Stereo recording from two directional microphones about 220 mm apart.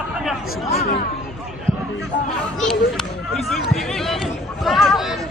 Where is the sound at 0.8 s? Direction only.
45° left (ahead or behind).